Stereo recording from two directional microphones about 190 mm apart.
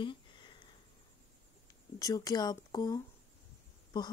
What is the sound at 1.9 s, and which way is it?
Speech, 20° left (ahead or behind).